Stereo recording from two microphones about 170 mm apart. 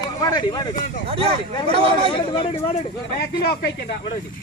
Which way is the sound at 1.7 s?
35° right (ahead or behind).